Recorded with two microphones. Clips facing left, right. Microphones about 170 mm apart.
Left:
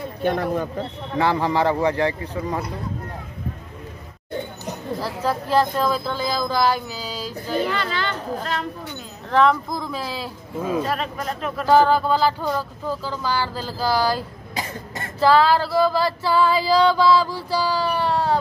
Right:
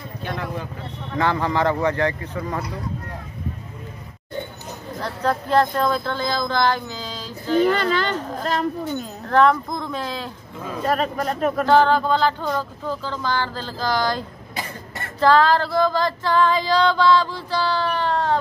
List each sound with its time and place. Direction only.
0.2 s speech: 50° left (ahead or behind)
1.1 s speech: 10° left (ahead or behind)
5.0 s speech: 5° left (ahead or behind)
7.6 s speech: 45° right (ahead or behind)
9.3 s speech: centre (ahead or behind)
10.9 s speech: 45° right (ahead or behind)
11.6 s speech: 10° left (ahead or behind)
15.1 s speech: 5° left (ahead or behind)